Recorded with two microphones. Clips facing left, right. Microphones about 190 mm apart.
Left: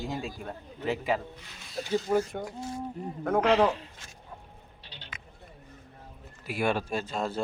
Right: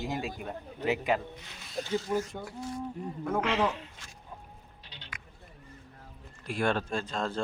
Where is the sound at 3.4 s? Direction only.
35° left (ahead or behind).